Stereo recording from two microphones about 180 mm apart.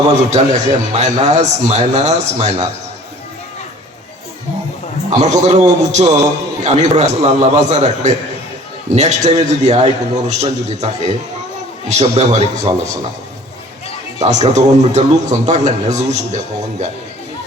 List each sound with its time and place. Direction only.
0.2 s speech: 40° right (ahead or behind)
5.1 s speech: 40° right (ahead or behind)
14.2 s speech: 40° right (ahead or behind)